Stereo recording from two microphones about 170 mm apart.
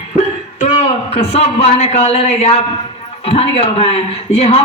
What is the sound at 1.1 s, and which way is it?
A woman's voice, 40° left (ahead or behind).